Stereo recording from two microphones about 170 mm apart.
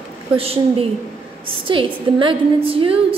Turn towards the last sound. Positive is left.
turn(degrees=-35)  # may be behind; listen again after turning